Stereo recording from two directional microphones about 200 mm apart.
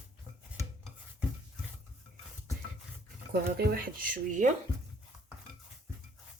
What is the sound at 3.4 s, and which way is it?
Speech, 50° right (ahead or behind).